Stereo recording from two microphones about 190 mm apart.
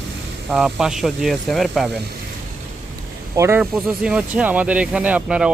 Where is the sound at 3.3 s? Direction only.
15° right (ahead or behind).